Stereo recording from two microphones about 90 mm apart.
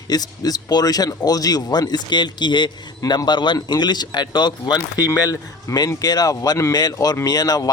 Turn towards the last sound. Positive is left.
turn(degrees=45)  # may be behind; listen again after turning